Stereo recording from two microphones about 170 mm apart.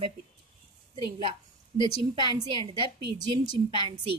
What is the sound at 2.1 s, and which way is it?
Speech, 30° right (ahead or behind).